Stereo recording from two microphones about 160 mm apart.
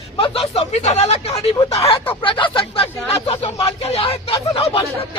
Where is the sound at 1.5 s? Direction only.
25° left (ahead or behind).